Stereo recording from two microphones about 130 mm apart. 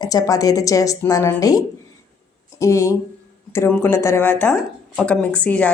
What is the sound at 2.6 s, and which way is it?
A woman's voice, 25° left (ahead or behind).